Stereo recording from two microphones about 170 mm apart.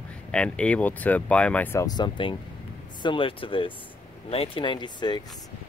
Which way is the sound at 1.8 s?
25° left (ahead or behind).